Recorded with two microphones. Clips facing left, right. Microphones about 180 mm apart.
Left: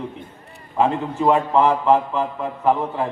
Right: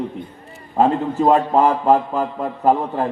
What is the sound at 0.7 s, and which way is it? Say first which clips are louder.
A man's voice: right 3 dB; 40° right (ahead or behind).